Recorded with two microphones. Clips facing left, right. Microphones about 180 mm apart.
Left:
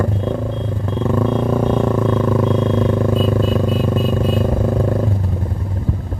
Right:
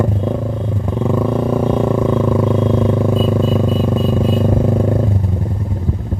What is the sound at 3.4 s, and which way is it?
Vehicle, 20° right (ahead or behind).